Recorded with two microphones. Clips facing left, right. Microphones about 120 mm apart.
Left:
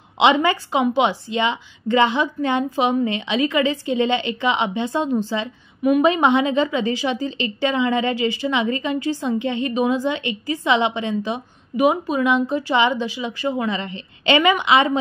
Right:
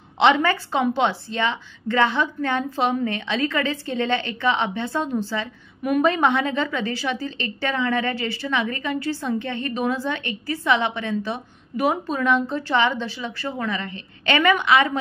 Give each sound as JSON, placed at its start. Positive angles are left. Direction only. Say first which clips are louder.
{"t": 0.2, "sound": "speech", "louder": "left 1 dB", "side_deg": 15}
{"t": 5.8, "sound": "a woman's voice", "louder": "left 4 dB", "side_deg": 5}
{"t": 6.0, "sound": "speech", "louder": "left 3 dB", "side_deg": 20}